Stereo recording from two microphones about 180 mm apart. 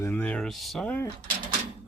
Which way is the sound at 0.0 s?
10° left (ahead or behind).